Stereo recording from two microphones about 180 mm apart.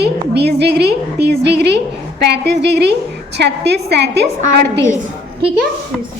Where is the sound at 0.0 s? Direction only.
65° right (ahead or behind).